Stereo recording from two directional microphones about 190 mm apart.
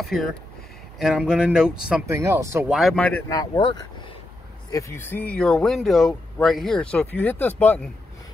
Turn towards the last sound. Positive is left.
turn(degrees=10)  # may be behind; listen again after turning